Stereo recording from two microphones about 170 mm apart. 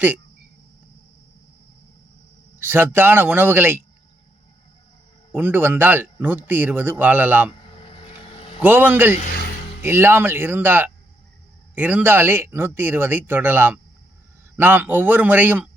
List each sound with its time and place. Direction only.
2.6 s speech: 10° right (ahead or behind)
5.3 s speech: 10° right (ahead or behind)
7.6 s vehicle: 35° left (ahead or behind)
8.6 s speech: 10° right (ahead or behind)